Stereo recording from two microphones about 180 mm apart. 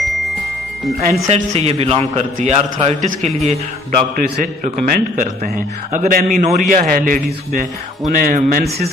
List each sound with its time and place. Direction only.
1.3 s a man's voice: 35° right (ahead or behind)
4.1 s a man's voice: 45° right (ahead or behind)